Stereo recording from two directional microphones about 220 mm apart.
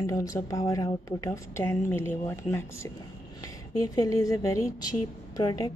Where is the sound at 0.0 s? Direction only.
15° left (ahead or behind).